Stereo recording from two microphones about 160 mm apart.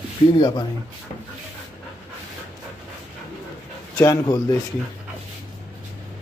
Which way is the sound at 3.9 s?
20° left (ahead or behind).